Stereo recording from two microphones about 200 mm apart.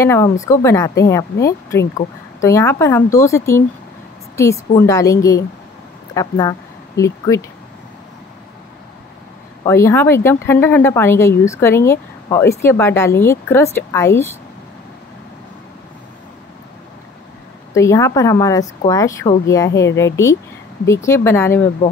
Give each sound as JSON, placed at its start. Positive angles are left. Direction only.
{"t": 0.0, "sound": "speech", "side_deg": 10}
{"t": 9.7, "sound": "speech", "side_deg": 15}
{"t": 17.7, "sound": "speech", "side_deg": 15}